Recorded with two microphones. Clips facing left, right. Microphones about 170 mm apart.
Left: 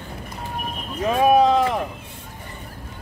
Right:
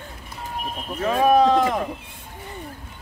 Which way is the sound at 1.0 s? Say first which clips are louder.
Left 1 dB; 10° left (ahead or behind).